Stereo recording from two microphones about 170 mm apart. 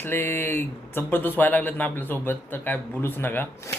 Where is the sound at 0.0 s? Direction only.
15° left (ahead or behind).